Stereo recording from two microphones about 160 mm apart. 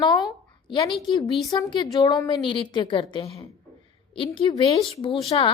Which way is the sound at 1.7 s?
25° left (ahead or behind).